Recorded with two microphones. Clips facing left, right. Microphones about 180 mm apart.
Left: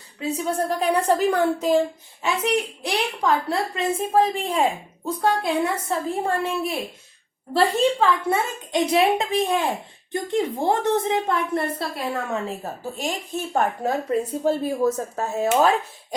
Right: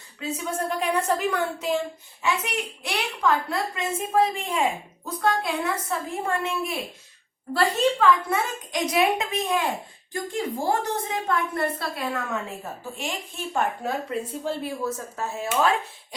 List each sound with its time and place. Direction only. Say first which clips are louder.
0.3 s a woman's voice: left 4 dB; 35° left (ahead or behind)